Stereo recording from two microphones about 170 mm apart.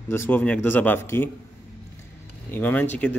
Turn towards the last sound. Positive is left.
turn(degrees=10)  # may be behind; listen again after turning